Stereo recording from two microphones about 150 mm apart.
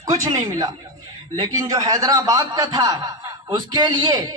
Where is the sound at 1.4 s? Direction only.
25° right (ahead or behind).